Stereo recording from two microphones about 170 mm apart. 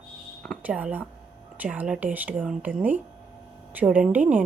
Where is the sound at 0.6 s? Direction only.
5° right (ahead or behind).